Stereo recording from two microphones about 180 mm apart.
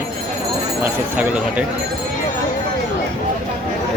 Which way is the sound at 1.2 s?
5° right (ahead or behind).